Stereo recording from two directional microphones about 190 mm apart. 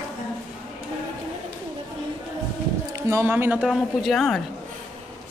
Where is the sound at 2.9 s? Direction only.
15° right (ahead or behind); by 4.4 s centre (ahead or behind).